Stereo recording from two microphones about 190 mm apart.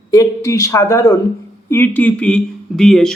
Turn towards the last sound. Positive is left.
turn(degrees=0)  # may be behind; listen again after turning